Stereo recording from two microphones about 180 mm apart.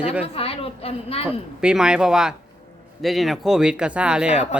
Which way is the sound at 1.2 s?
5° right (ahead or behind).